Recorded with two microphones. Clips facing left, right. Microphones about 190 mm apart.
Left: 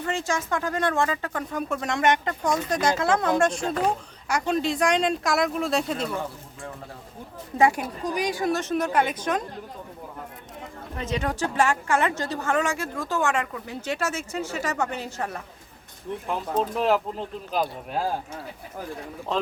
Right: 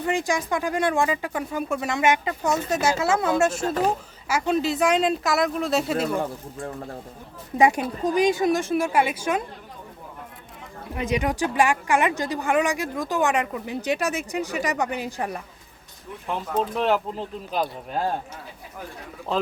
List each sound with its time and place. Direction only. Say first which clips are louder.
0.0 s speech: right 3 dB; 15° right (ahead or behind)
7.6 s speech: right 2 dB; 20° right (ahead or behind)
10.9 s speech: right 4 dB; 15° right (ahead or behind)
16.2 s speech: right 1 dB; centre (ahead or behind)
19.3 s speech: right 2 dB; centre (ahead or behind)